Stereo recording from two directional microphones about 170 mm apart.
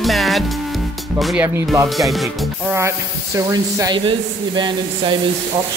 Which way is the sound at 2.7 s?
15° right (ahead or behind).